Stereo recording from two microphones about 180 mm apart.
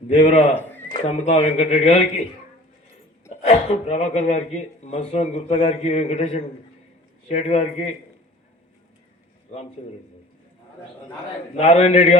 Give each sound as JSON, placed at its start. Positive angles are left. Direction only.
{"t": 0.1, "sound": "speech", "side_deg": 40}
{"t": 0.5, "sound": "a sound", "side_deg": 10}
{"t": 0.9, "sound": "speech", "side_deg": 40}
{"t": 3.2, "sound": "speech", "side_deg": 35}
{"t": 9.8, "sound": "speech", "side_deg": 35}
{"t": 11.5, "sound": "speech", "side_deg": 35}